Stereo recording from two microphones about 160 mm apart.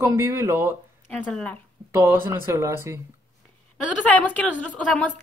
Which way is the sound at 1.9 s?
15° right (ahead or behind).